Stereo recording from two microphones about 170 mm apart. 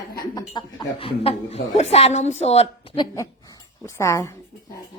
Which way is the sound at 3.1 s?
20° left (ahead or behind).